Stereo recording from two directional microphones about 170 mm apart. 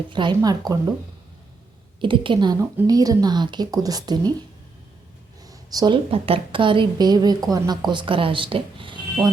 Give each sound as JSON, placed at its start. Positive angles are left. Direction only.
{"t": 0.1, "sound": "a woman's voice", "side_deg": -25}
{"t": 2.0, "sound": "a woman's voice", "side_deg": -30}
{"t": 5.5, "sound": "a woman's voice", "side_deg": -25}